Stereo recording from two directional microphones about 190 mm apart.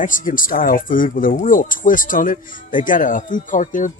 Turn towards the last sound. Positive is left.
turn(degrees=45)  # may be behind; listen again after turning